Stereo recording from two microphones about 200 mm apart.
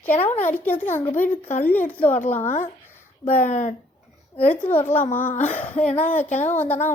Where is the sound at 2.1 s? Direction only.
35° left (ahead or behind).